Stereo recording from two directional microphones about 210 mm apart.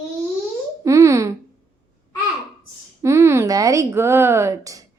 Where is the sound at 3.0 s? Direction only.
15° right (ahead or behind).